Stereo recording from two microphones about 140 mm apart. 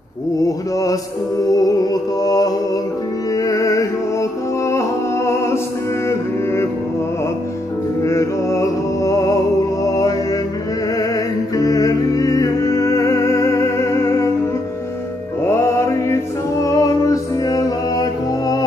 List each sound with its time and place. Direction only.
0.5 s mantra: 25° left (ahead or behind)
1.5 s music: 25° left (ahead or behind)
8.0 s music: 20° left (ahead or behind)
11.0 s music: 25° left (ahead or behind)
15.4 s music: 20° left (ahead or behind)